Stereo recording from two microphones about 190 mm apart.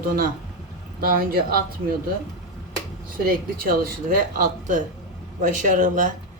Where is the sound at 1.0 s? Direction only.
50° right (ahead or behind).